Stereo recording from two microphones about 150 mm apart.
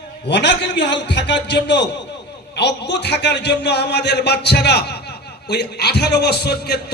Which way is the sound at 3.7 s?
90° left.